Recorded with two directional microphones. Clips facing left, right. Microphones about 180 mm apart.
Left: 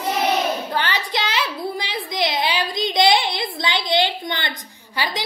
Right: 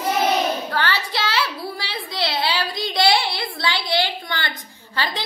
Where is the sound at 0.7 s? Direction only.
20° left (ahead or behind).